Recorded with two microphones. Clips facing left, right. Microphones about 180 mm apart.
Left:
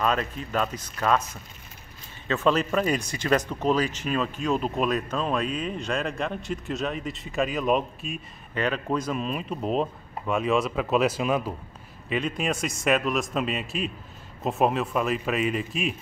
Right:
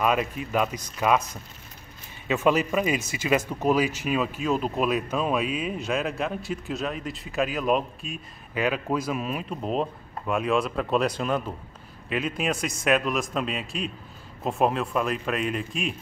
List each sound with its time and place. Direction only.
0.0 s speech: 10° right (ahead or behind)